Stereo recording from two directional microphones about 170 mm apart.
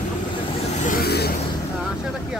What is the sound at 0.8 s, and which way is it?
Vehicle, 60° left (ahead or behind).